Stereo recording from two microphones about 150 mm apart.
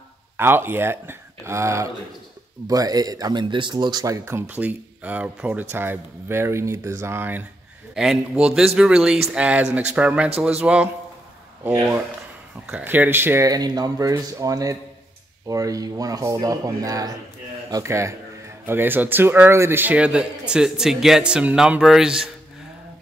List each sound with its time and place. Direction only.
0.4 s speech: 15° right (ahead or behind)